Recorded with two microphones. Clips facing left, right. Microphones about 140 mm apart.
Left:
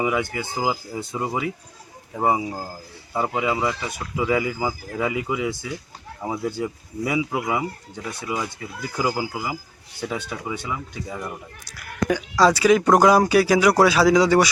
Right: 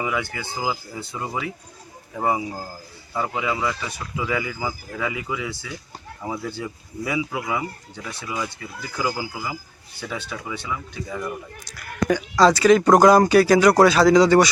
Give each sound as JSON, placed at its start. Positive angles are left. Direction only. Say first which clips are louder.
{"t": 0.1, "sound": "speech", "louder": "left 3 dB", "side_deg": 20}